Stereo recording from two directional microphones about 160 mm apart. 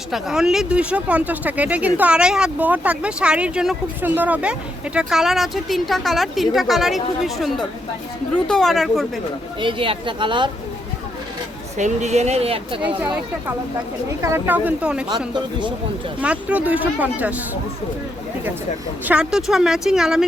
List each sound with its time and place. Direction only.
0.1 s speech: 5° right (ahead or behind)
9.6 s speech: 30° right (ahead or behind)
11.8 s speech: 45° right (ahead or behind)
14.2 s speech: 15° right (ahead or behind)
16.2 s speech: 10° right (ahead or behind)
19.0 s speech: 5° right (ahead or behind)